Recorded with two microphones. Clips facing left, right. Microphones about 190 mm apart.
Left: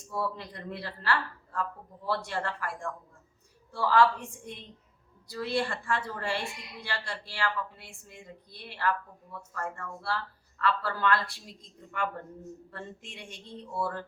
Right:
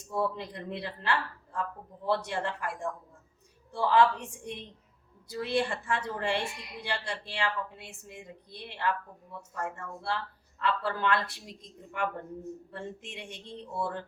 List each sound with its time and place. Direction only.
0.1 s a woman's voice: 20° right (ahead or behind)